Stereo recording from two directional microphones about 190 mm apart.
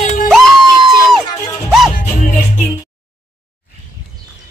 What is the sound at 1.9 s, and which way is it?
Music, 40° left (ahead or behind).